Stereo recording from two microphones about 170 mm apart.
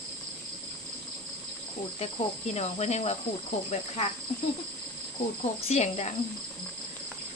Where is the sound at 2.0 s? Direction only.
40° left (ahead or behind).